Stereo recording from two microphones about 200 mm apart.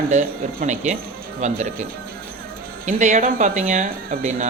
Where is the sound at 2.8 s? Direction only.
35° right (ahead or behind).